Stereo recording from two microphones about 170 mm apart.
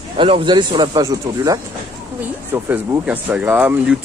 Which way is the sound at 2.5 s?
10° right (ahead or behind).